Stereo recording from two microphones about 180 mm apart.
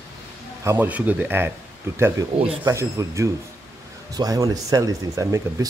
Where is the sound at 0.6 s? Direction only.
10° right (ahead or behind).